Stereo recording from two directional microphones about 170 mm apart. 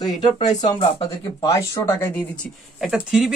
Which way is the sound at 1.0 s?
20° left (ahead or behind).